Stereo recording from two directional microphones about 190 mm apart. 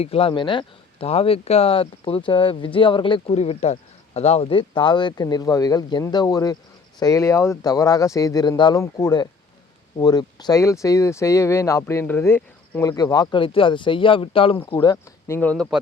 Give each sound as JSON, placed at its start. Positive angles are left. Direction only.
{"t": 0.0, "sound": "speech", "side_deg": 30}
{"t": 15.4, "sound": "speech", "side_deg": 5}